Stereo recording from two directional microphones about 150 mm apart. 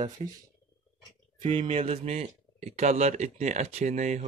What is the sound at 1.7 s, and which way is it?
Speech, 45° right (ahead or behind).